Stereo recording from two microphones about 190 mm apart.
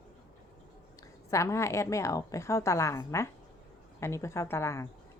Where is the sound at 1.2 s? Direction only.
15° left (ahead or behind).